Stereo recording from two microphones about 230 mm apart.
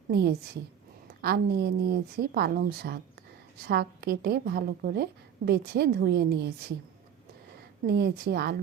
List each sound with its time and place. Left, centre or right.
0.1 s a woman's voice: right
7.9 s a woman's voice: right